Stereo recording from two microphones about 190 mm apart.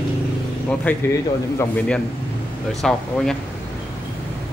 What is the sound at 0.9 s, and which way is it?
Speech, 10° left (ahead or behind).